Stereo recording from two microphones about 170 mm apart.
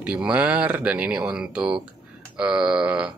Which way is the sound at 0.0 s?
5° right (ahead or behind).